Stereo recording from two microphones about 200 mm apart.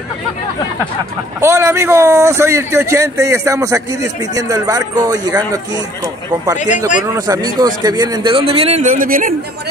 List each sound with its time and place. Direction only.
1.4 s speech: 15° right (ahead or behind)
7.1 s a man's voice: 20° right (ahead or behind); by 9.3 s 40° right (ahead or behind)